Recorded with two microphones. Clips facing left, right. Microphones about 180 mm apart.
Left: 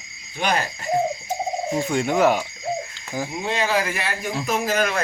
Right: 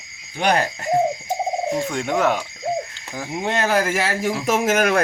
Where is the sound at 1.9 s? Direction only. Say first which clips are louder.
Left 4 dB; 5° left (ahead or behind).